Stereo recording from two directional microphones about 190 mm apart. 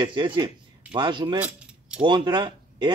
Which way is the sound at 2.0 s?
25° right (ahead or behind).